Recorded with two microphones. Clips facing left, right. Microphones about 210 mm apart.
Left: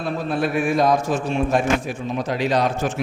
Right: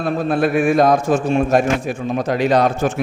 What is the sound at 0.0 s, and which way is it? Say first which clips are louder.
A man's voice: right 5 dB; 50° right (ahead or behind).